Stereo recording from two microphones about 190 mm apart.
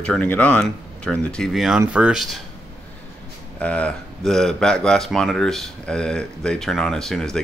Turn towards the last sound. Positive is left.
turn(degrees=5)  # may be behind; listen again after turning